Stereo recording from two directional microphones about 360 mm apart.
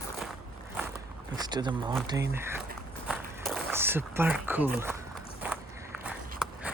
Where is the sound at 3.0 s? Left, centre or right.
Centre.